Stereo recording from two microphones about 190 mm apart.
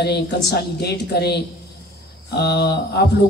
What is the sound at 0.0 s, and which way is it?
A man's voice, 60° left (ahead or behind).